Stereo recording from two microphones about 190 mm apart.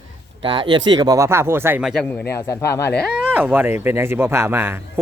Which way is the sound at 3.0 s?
5° right (ahead or behind).